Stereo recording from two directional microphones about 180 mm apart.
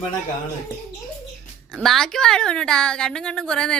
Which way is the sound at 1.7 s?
Centre (ahead or behind).